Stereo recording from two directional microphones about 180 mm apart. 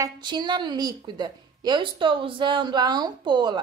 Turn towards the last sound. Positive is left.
turn(degrees=-25)  # may be behind; listen again after turning